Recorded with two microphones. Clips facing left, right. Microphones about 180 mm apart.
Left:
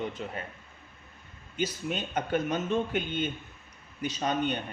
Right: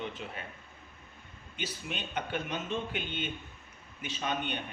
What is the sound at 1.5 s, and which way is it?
Speech, 40° left (ahead or behind).